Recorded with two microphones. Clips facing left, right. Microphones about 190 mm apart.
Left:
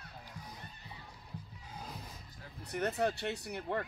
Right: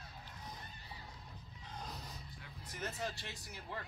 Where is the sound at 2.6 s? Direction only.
65° left (ahead or behind).